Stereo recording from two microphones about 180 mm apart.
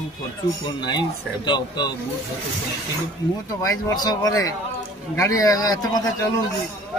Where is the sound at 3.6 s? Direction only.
20° left (ahead or behind).